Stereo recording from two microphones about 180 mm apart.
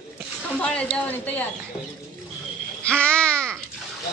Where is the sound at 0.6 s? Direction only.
5° left (ahead or behind).